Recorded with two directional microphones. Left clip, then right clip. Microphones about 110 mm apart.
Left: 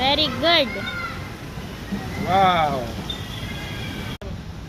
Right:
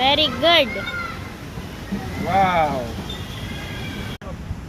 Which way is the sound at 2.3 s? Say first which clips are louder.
Even; 40° left (ahead or behind).